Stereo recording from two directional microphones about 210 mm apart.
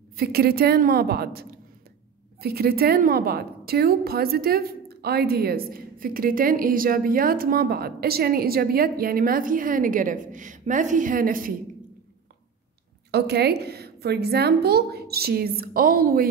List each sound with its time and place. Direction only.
0.1 s a woman's voice: 45° right (ahead or behind)
13.1 s a woman's voice: 50° right (ahead or behind)